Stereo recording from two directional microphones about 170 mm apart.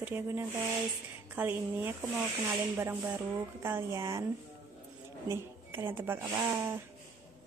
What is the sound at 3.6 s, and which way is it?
Speech, 20° right (ahead or behind).